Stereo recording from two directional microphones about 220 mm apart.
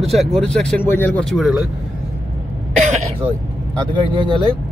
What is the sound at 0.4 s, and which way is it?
Speech, 5° left (ahead or behind).